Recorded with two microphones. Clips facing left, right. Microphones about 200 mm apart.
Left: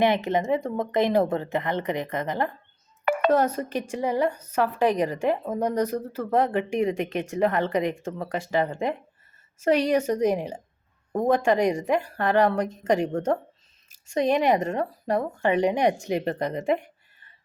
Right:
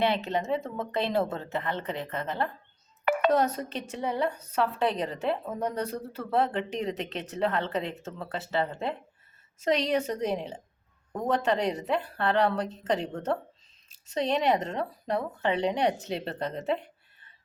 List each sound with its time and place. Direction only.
0.0 s a woman's voice: 15° left (ahead or behind)
3.0 s a sound: 45° left (ahead or behind)
3.2 s a woman's voice: 10° left (ahead or behind)